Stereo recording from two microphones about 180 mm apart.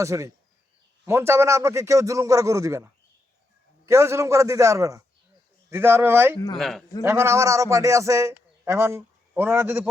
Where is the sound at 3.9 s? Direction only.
15° right (ahead or behind).